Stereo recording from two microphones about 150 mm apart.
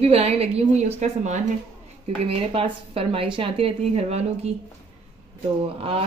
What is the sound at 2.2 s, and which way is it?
Speech, 40° right (ahead or behind).